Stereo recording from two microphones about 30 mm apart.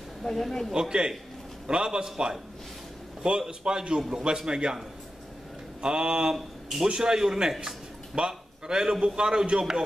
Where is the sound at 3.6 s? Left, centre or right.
Right.